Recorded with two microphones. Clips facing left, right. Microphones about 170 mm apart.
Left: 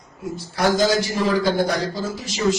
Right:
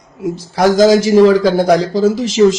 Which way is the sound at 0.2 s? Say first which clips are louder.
Right 8 dB; 90° right.